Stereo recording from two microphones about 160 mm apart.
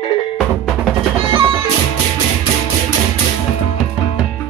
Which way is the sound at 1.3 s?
35° right (ahead or behind).